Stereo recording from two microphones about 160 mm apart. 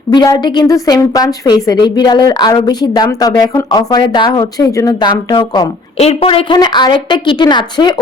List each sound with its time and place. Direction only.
0.1 s a woman's voice: 25° left (ahead or behind)